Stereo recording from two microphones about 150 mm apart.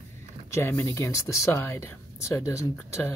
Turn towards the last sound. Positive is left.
turn(degrees=20)  # may be behind; listen again after turning